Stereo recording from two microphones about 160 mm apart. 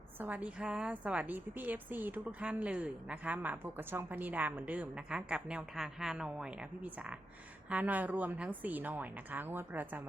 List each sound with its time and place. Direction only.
0.2 s a woman's voice: 10° right (ahead or behind)